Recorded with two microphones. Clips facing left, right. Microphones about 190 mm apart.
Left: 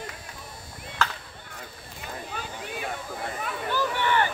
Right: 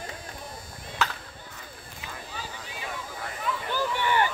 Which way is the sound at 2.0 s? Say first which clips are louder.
Left 4 dB; 60° left (ahead or behind).